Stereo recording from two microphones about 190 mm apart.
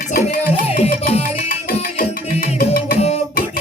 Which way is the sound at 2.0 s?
50° left (ahead or behind).